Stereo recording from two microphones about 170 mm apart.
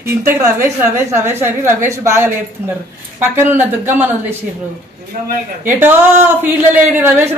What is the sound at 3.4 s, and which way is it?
Speech, 15° right (ahead or behind).